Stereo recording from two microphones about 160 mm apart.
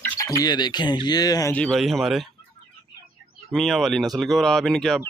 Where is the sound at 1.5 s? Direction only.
5° left (ahead or behind).